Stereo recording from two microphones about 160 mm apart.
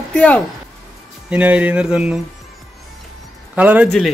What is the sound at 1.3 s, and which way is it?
Mantra, 10° right (ahead or behind).